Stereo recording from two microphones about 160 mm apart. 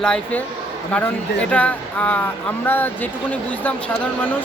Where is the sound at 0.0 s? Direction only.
5° left (ahead or behind).